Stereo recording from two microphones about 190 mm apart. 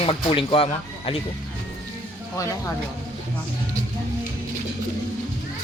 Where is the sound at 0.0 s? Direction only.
30° left (ahead or behind).